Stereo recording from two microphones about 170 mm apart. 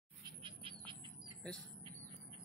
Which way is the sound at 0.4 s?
30° right (ahead or behind).